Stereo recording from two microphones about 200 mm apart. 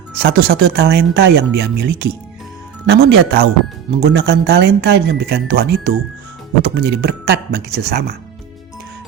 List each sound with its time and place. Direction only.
0.2 s speech: 50° right (ahead or behind)